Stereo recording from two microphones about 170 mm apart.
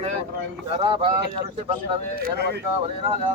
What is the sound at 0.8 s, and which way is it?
Speech, 30° right (ahead or behind).